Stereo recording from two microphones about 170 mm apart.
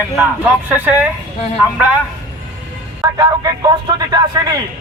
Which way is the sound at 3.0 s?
20° right (ahead or behind).